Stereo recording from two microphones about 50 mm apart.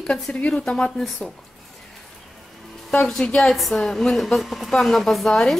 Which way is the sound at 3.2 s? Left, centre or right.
Left.